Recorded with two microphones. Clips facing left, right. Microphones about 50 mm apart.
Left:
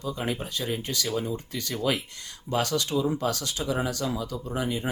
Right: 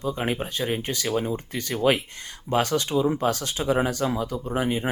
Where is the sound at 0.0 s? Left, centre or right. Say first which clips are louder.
Right 4 dB; right.